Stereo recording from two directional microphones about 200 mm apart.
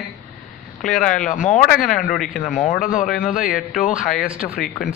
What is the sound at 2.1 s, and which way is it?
Speech, centre (ahead or behind).